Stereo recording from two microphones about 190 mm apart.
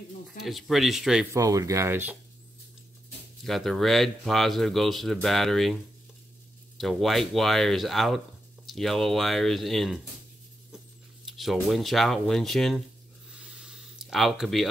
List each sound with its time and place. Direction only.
0.4 s speech: centre (ahead or behind)
1.3 s speech: 20° right (ahead or behind)
3.4 s speech: centre (ahead or behind)
6.8 s speech: centre (ahead or behind)
11.2 s speech: centre (ahead or behind)
13.3 s a sound: 5° right (ahead or behind)